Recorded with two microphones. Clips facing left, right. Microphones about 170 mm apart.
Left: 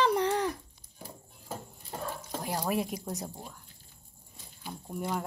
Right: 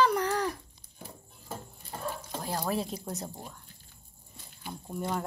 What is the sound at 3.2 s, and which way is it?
Speech, centre (ahead or behind).